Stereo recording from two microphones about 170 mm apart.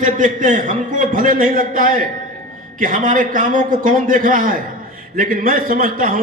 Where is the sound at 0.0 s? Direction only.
50° right (ahead or behind).